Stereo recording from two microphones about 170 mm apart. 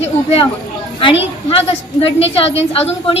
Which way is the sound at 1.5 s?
35° left (ahead or behind).